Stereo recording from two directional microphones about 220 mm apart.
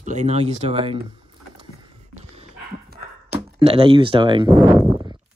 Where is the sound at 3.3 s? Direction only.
20° right (ahead or behind).